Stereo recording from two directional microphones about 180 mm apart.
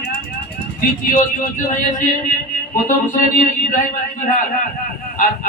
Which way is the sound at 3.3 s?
50° left (ahead or behind).